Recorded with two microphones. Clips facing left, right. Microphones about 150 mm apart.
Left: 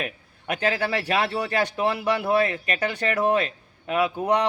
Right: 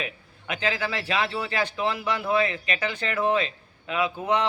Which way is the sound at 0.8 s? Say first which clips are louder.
Left 3 dB; 45° left (ahead or behind).